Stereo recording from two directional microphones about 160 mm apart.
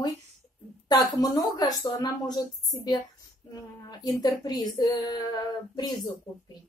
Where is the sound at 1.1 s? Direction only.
25° left (ahead or behind).